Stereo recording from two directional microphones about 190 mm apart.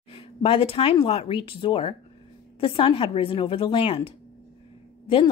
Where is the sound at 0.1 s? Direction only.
30° left (ahead or behind).